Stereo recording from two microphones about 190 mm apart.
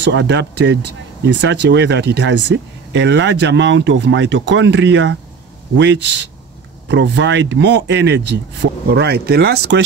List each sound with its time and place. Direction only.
0.0 s speech: 70° right (ahead or behind)